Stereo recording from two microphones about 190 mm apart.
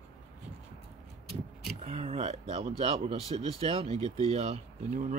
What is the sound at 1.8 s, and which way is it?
Speech, 30° right (ahead or behind).